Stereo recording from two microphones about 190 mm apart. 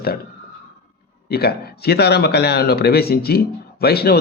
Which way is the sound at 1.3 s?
55° left (ahead or behind).